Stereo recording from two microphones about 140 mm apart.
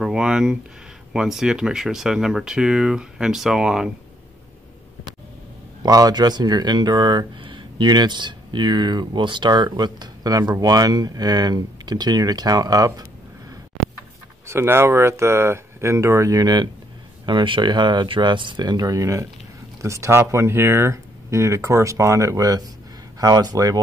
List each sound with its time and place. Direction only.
0.0 s speech: 5° right (ahead or behind)
5.8 s speech: 25° right (ahead or behind)
14.5 s speech: 15° right (ahead or behind)